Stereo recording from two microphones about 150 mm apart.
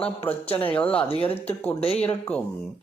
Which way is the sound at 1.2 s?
40° left (ahead or behind).